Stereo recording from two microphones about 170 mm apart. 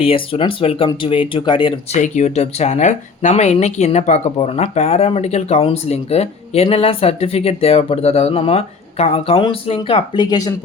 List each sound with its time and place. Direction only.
0.0 s speech: 35° left (ahead or behind)
1.9 s speech: 45° left (ahead or behind); by 10.5 s 20° left (ahead or behind)